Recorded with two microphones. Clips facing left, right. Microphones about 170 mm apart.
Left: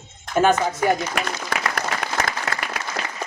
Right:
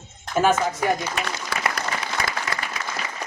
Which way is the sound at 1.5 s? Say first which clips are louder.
Left 1 dB; 55° left (ahead or behind).